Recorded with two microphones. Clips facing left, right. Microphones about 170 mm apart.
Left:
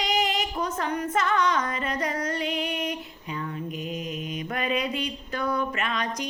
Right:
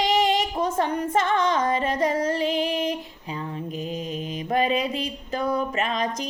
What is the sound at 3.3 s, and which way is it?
Mantra, 25° right (ahead or behind).